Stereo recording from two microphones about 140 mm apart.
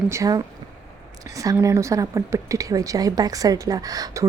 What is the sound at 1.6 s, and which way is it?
Speech, 20° right (ahead or behind).